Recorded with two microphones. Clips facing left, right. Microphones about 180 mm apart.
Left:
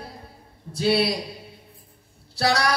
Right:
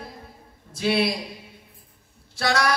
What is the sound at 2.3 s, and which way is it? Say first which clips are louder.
Music: left 1 dB; 35° left (ahead or behind).